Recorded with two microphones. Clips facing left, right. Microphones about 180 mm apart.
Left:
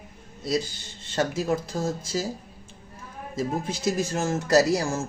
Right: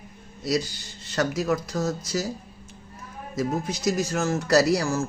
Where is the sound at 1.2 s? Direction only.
25° left (ahead or behind).